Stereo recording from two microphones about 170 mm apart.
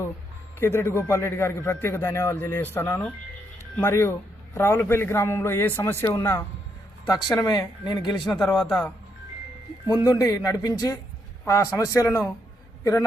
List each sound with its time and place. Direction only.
0.6 s a man's voice: 15° left (ahead or behind)
8.1 s a man's voice: centre (ahead or behind)
9.8 s a man's voice: 20° left (ahead or behind)